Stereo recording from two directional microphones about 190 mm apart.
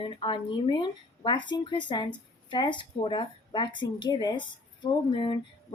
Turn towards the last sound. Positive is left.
turn(degrees=25)  # may be behind; listen again after turning